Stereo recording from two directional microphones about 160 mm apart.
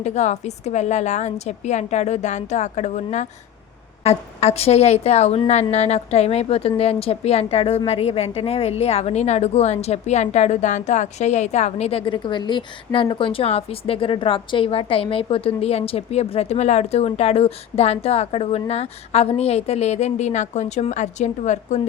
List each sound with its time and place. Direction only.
0.0 s a woman's voice: 45° left (ahead or behind)